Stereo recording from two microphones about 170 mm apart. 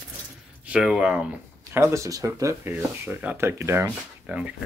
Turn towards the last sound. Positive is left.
turn(degrees=-5)  # may be behind; listen again after turning